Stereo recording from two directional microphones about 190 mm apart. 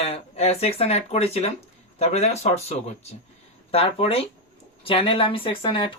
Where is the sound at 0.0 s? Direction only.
30° left (ahead or behind).